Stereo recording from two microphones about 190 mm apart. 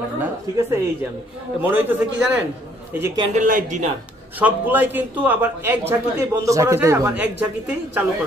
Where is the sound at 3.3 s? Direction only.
45° right (ahead or behind).